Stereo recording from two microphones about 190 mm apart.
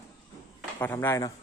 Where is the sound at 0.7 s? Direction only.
10° left (ahead or behind).